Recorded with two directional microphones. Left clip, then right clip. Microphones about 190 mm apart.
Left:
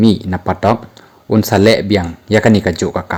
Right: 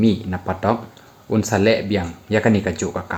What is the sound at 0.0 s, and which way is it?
Speech, 45° left (ahead or behind).